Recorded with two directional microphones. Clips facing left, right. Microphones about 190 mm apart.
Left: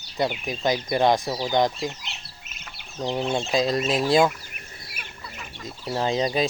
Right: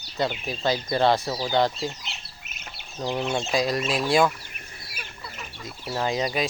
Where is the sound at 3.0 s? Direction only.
20° left (ahead or behind).